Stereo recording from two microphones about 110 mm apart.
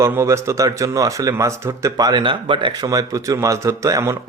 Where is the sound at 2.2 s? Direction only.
50° right (ahead or behind).